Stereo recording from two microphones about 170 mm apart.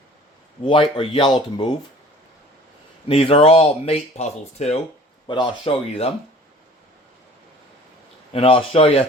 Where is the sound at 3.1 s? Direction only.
35° left (ahead or behind).